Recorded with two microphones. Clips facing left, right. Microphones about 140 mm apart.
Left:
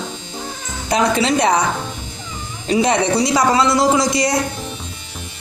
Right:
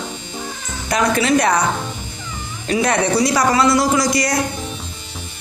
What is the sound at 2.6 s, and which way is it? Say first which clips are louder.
A man's voice: left 2 dB; 25° left (ahead or behind).